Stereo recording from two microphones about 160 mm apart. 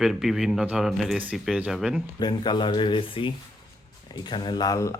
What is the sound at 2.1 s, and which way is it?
Speech, 25° left (ahead or behind).